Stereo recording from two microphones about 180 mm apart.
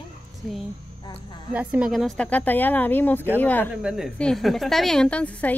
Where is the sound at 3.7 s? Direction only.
5° right (ahead or behind).